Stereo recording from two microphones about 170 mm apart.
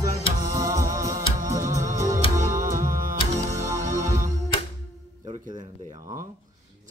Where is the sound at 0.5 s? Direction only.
20° right (ahead or behind).